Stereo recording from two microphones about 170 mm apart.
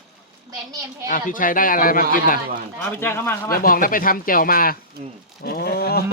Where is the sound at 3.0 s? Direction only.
15° left (ahead or behind).